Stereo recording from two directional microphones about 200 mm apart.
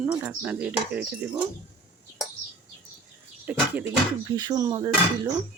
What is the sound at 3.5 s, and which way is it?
Speech, 10° right (ahead or behind).